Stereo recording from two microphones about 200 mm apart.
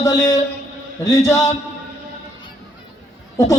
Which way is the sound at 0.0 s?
15° left (ahead or behind).